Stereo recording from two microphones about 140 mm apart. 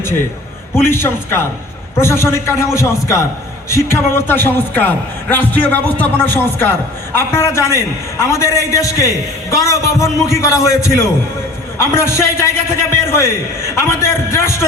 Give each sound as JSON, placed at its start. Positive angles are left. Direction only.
{"t": 0.8, "sound": "a man's voice", "side_deg": 15}